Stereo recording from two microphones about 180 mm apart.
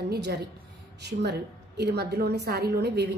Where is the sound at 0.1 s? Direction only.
70° right (ahead or behind).